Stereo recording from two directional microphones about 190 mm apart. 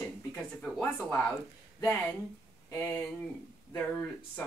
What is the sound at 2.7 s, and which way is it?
Speech, 10° left (ahead or behind).